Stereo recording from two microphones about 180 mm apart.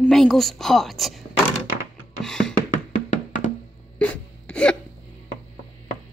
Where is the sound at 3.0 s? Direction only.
40° left (ahead or behind).